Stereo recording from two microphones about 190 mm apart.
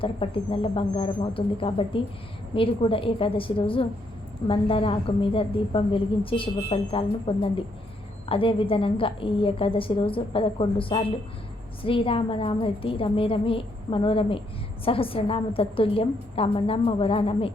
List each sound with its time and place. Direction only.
0.0 s a woman's voice: 30° left (ahead or behind)